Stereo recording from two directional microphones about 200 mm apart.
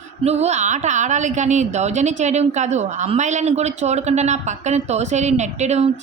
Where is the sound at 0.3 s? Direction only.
35° right (ahead or behind).